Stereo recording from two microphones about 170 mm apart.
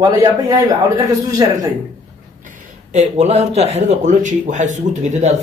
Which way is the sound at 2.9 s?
40° right (ahead or behind).